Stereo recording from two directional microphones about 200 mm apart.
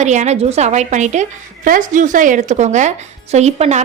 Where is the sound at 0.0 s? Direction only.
35° right (ahead or behind).